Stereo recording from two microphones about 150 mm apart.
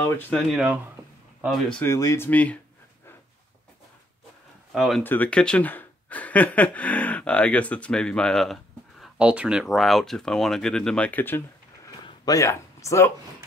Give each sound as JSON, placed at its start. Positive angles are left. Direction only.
{"t": 0.0, "sound": "speech", "side_deg": 15}
{"t": 0.5, "sound": "speech", "side_deg": -5}
{"t": 1.8, "sound": "speech", "side_deg": 20}
{"t": 4.7, "sound": "speech", "side_deg": 0}
{"t": 5.0, "sound": "speech", "side_deg": 10}
{"t": 9.0, "sound": "speech", "side_deg": -5}